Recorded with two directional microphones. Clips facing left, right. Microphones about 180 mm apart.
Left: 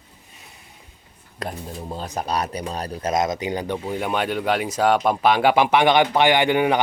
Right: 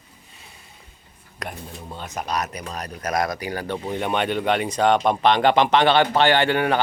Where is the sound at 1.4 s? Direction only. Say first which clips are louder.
Left 4 dB; 35° left (ahead or behind); by 3.8 s 20° left (ahead or behind).